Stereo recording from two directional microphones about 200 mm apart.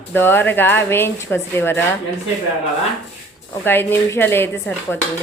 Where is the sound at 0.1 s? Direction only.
10° left (ahead or behind).